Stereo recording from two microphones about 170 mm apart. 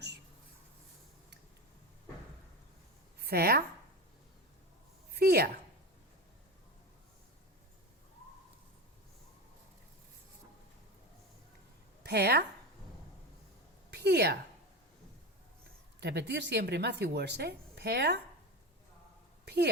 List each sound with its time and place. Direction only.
3.2 s a woman's voice: 65° right (ahead or behind)
5.1 s a woman's voice: 65° right (ahead or behind)
12.0 s a woman's voice: 75° right (ahead or behind)
13.9 s a sound: 80° right
16.0 s speech: 85° right
19.5 s a woman's voice: 75° right (ahead or behind)